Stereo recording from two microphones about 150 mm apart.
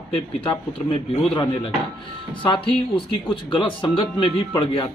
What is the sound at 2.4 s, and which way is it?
A man's voice, 35° left (ahead or behind).